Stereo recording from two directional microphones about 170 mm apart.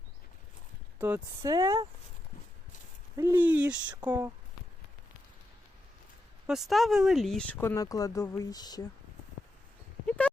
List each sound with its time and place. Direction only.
0.9 s speech: 15° right (ahead or behind)
3.2 s speech: 15° right (ahead or behind)
6.5 s speech: centre (ahead or behind); by 8.9 s 25° left (ahead or behind)
10.1 s clip-clop: 10° left (ahead or behind)